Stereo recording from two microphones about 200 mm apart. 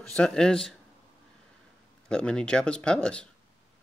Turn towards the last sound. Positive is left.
turn(degrees=5)  # may be behind; listen again after turning